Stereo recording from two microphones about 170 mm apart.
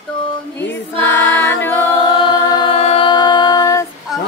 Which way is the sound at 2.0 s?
25° left (ahead or behind).